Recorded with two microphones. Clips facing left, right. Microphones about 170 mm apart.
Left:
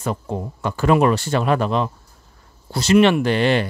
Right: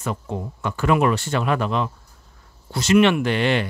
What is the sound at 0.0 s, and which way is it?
Speech, 35° left (ahead or behind).